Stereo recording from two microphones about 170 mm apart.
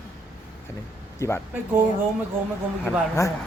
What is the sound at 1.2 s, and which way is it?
Speech, 15° left (ahead or behind).